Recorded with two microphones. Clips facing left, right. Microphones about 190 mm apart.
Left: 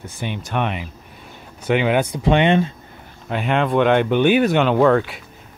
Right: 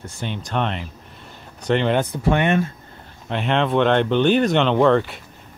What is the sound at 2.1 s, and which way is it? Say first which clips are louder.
Speech: left 3 dB; 20° left (ahead or behind).